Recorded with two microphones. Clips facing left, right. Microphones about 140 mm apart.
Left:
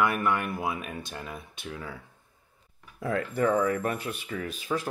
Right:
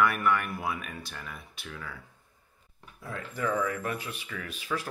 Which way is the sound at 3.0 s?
65° left (ahead or behind).